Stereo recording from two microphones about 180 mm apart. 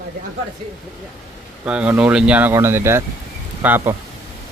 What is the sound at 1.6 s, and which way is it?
Speech, 5° right (ahead or behind).